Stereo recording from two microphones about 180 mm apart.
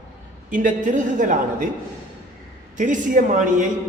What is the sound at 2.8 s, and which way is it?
Speech, 45° right (ahead or behind).